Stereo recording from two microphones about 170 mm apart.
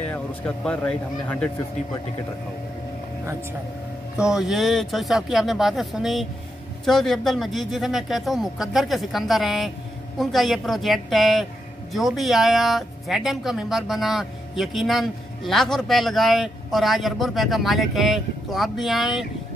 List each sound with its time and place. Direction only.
0.0 s speech: 10° left (ahead or behind)
4.2 s speech: 5° right (ahead or behind)